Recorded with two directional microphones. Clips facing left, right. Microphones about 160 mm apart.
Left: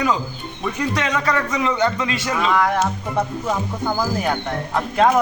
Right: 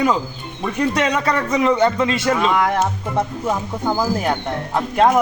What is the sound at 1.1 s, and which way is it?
A man's voice, 25° right (ahead or behind).